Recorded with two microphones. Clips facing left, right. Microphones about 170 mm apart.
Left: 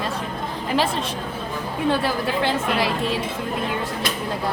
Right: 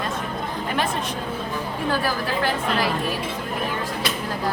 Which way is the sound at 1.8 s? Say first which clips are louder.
Left 3 dB; 25° left (ahead or behind).